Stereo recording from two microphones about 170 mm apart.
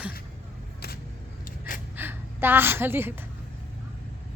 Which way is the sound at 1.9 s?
10° right (ahead or behind).